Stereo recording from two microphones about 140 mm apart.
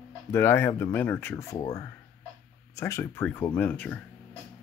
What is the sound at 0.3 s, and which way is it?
Speech, 20° left (ahead or behind).